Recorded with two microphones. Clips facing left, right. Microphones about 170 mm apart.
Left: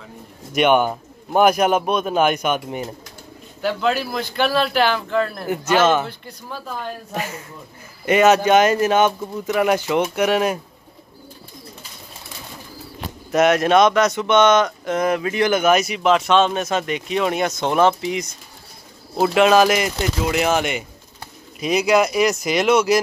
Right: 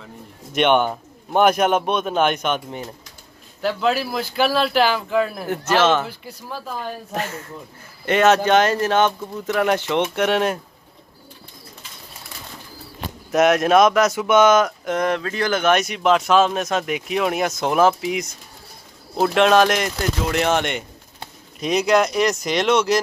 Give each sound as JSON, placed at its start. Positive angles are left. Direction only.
{"t": 0.5, "sound": "speech", "side_deg": 5}
{"t": 13.3, "sound": "speech", "side_deg": 0}
{"t": 15.2, "sound": "speech", "side_deg": 15}
{"t": 15.6, "sound": "speech", "side_deg": 5}